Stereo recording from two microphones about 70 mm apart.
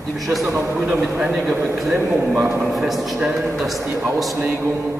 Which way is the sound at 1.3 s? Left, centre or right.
Centre.